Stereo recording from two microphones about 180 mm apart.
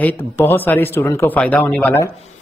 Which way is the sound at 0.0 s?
10° left (ahead or behind).